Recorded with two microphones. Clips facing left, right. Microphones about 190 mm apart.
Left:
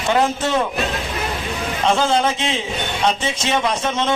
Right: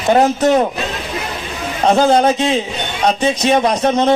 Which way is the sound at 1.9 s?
40° right (ahead or behind).